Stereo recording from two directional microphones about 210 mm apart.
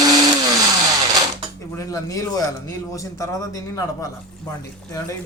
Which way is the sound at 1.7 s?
15° left (ahead or behind).